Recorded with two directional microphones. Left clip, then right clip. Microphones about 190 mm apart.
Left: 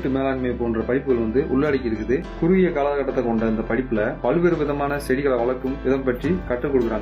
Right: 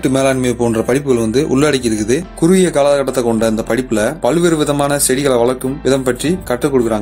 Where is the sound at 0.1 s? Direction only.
60° right (ahead or behind).